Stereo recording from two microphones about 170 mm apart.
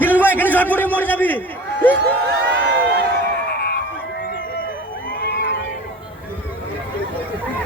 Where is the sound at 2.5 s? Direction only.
90° right.